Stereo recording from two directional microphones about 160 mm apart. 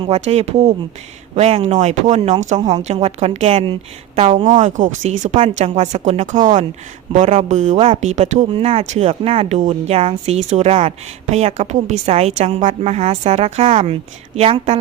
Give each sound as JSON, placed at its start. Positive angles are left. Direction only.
{"t": 0.0, "sound": "speech", "side_deg": -40}
{"t": 4.4, "sound": "speech", "side_deg": -50}
{"t": 8.4, "sound": "speech", "side_deg": -35}